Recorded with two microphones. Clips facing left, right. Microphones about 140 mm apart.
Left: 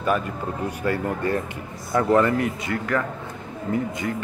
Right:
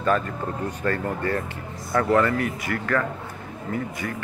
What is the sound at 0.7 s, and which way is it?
Speech, 10° left (ahead or behind).